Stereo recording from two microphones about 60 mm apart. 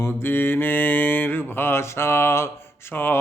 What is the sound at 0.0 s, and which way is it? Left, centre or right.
Mantra, left.